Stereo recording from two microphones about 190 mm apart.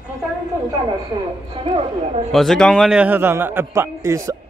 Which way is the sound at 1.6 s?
35° right (ahead or behind).